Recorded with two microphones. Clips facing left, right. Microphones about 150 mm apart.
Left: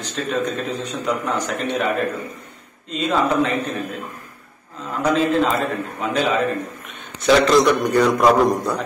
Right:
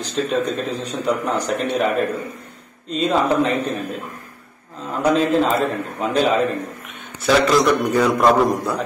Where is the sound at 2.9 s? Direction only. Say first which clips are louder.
Right 2 dB; 35° right (ahead or behind).